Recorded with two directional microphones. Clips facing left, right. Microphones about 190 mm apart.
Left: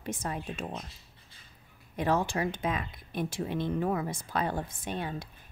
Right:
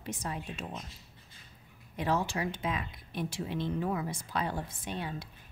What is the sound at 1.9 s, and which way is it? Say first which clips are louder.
Speech: left 3 dB; 50° left (ahead or behind).